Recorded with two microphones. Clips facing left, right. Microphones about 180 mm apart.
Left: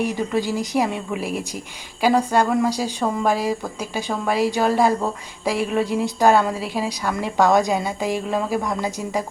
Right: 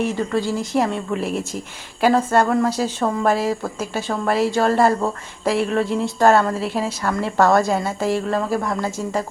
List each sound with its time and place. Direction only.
0.3 s speech: 15° left (ahead or behind)
0.7 s a woman's voice: 5° left (ahead or behind)